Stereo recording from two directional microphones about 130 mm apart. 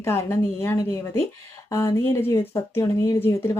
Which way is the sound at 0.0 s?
20° left (ahead or behind).